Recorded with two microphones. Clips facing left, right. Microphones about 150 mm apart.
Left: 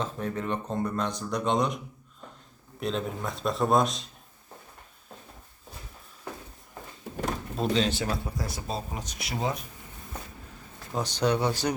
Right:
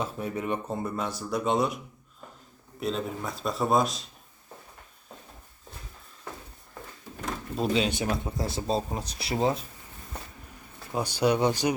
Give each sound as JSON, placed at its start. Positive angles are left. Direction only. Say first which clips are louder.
{"t": 0.0, "sound": "speech", "louder": "even", "side_deg": -10}
{"t": 2.8, "sound": "speech", "louder": "even", "side_deg": 0}
{"t": 7.5, "sound": "speech", "louder": "right 1 dB", "side_deg": -5}
{"t": 10.9, "sound": "speech", "louder": "right 2 dB", "side_deg": -10}